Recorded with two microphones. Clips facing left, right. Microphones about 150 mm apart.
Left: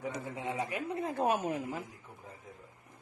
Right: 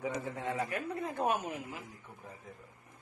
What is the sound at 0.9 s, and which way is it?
Speech, 30° left (ahead or behind).